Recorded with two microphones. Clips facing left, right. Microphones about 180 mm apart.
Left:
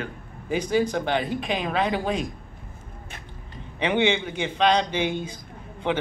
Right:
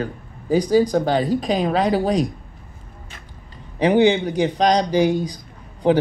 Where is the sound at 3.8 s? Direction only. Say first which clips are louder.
Right 7 dB; 40° right (ahead or behind).